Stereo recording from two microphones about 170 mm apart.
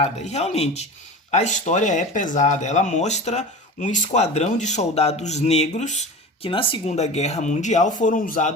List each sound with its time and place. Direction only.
0.0 s speech: 40° left (ahead or behind)